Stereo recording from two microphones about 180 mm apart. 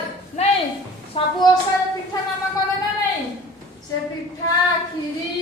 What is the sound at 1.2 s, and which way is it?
Speech, 30° left (ahead or behind).